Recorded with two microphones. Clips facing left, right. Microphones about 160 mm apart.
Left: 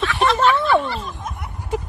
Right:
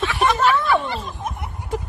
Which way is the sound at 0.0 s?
15° right (ahead or behind).